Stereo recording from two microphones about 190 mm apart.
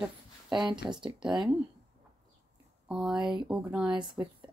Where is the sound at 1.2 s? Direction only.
5° right (ahead or behind).